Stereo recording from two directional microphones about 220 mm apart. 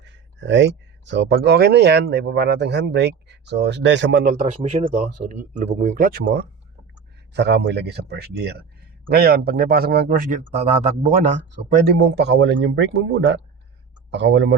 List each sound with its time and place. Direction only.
0.0 s speech: 55° right (ahead or behind)
4.3 s speech: 30° right (ahead or behind)
11.9 s speech: 50° right (ahead or behind)